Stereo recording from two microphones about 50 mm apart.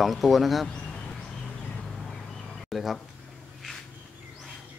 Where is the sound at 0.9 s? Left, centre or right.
Centre.